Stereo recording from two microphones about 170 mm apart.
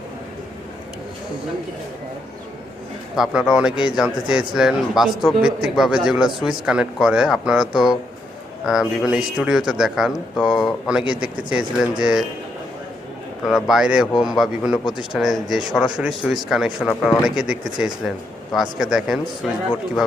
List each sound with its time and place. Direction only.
3.2 s speech: 5° right (ahead or behind)
13.5 s speech: centre (ahead or behind)